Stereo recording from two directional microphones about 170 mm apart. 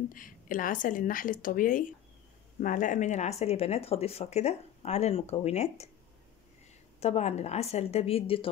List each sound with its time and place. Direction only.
0.1 s a woman's voice: 55° left (ahead or behind)
7.0 s speech: 40° left (ahead or behind)